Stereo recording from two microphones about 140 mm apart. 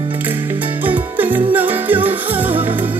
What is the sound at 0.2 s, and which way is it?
Music, 15° right (ahead or behind).